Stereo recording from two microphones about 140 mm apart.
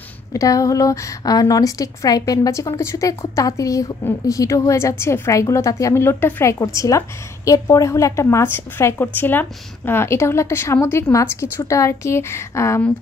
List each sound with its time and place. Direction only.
0.3 s a woman's voice: 25° left (ahead or behind)